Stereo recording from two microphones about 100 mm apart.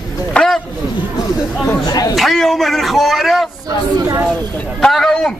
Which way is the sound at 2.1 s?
Centre (ahead or behind).